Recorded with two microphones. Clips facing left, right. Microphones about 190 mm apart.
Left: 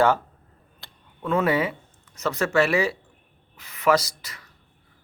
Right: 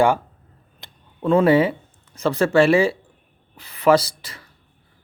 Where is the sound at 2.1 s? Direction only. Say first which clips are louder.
Right 5 dB; 30° right (ahead or behind).